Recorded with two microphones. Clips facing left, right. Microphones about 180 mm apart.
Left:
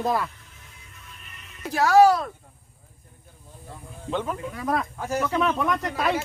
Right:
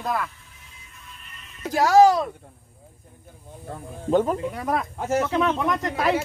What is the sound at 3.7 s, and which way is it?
Speech, 40° right (ahead or behind).